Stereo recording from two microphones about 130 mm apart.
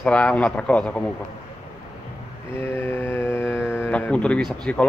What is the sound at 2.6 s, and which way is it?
Mantra, 20° left (ahead or behind).